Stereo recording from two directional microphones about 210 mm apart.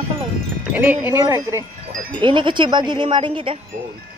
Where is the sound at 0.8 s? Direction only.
10° right (ahead or behind).